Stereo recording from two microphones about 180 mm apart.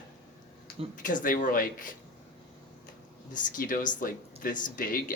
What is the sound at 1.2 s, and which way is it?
Speech, 50° left (ahead or behind).